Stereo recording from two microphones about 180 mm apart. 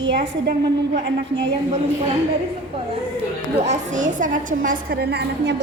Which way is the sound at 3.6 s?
40° right (ahead or behind).